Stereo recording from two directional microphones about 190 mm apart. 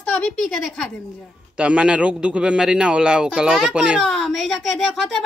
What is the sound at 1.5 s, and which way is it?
A man's voice, 5° right (ahead or behind).